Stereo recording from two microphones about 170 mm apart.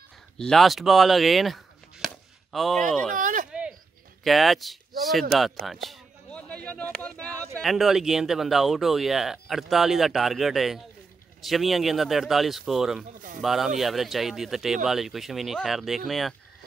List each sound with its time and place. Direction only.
0.4 s speech: centre (ahead or behind)
3.2 s speech: 50° right (ahead or behind)
4.2 s speech: centre (ahead or behind)